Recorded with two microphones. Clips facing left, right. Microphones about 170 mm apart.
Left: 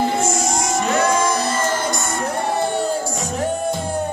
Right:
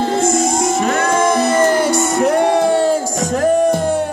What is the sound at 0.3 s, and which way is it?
Music, 55° right (ahead or behind).